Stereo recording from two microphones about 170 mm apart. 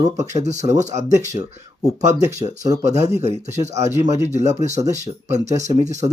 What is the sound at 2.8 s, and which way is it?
Speech, 40° right (ahead or behind).